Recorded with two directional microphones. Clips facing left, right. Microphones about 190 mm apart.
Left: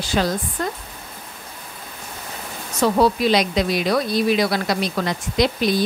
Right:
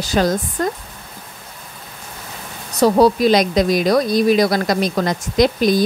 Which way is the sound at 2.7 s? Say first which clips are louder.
Right 5 dB; 40° right (ahead or behind).